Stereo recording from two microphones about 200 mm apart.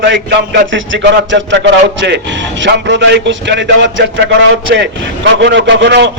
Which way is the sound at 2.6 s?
65° right (ahead or behind).